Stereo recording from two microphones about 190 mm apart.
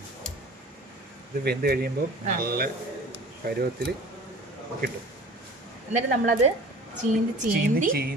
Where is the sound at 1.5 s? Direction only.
55° right (ahead or behind).